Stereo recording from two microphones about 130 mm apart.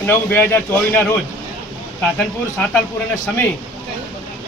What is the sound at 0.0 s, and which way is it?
Speech, 15° left (ahead or behind).